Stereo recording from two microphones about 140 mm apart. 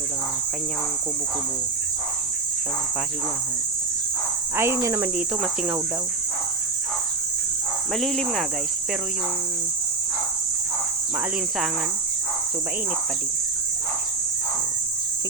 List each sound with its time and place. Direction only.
4.5 s speech: 20° right (ahead or behind)
7.9 s speech: centre (ahead or behind)